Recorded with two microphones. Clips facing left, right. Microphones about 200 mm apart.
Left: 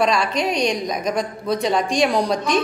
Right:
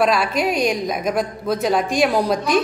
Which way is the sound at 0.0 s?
5° right (ahead or behind).